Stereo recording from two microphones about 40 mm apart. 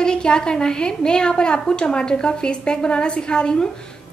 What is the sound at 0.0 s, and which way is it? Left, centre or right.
A woman's voice, left.